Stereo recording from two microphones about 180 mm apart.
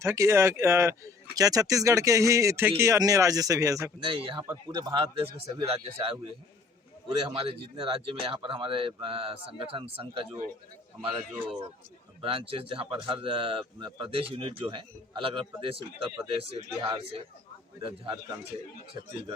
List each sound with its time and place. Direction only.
0.0 s speech: 15° right (ahead or behind)
4.0 s speech: 30° right (ahead or behind)
7.3 s speech: 30° right (ahead or behind)
12.2 s speech: 30° right (ahead or behind)